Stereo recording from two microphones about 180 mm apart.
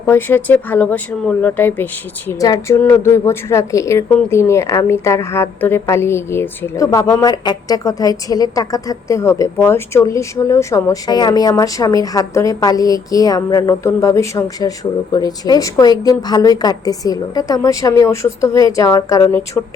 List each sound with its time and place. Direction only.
0.0 s a woman's voice: 10° left (ahead or behind)